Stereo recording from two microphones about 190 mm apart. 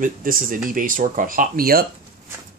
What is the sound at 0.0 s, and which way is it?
Speech, 45° right (ahead or behind).